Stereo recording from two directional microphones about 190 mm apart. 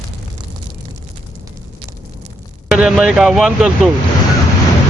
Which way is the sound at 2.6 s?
5° right (ahead or behind).